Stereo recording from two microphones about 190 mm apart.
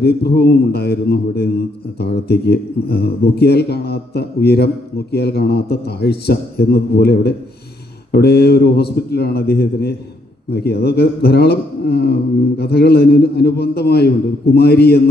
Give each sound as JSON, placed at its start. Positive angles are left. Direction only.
{"t": 0.0, "sound": "speech", "side_deg": 55}